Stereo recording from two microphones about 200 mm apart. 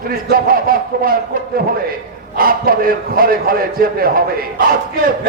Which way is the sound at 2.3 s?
45° right (ahead or behind).